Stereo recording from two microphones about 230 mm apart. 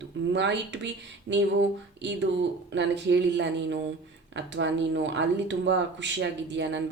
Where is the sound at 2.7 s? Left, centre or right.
Right.